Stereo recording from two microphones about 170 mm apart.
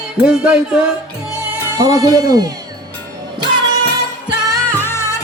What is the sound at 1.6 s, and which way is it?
Speech, 20° right (ahead or behind).